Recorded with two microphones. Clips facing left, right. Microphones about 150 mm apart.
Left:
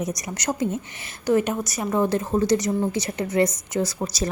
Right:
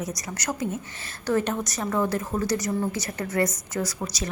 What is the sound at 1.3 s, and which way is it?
Speech, 10° left (ahead or behind).